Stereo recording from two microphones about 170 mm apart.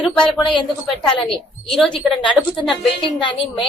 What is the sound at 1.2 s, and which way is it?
A woman's voice, 5° left (ahead or behind).